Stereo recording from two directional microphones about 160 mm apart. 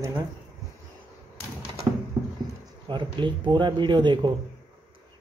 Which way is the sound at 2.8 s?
30° right (ahead or behind).